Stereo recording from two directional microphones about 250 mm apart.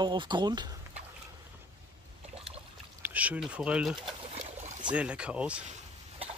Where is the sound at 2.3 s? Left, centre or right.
Right.